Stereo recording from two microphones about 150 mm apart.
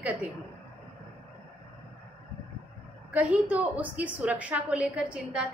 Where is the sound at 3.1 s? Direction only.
10° right (ahead or behind).